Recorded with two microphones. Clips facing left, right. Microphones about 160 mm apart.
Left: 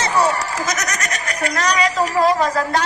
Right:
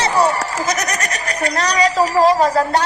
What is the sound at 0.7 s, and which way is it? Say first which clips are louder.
Speech: right 3 dB; 30° right (ahead or behind).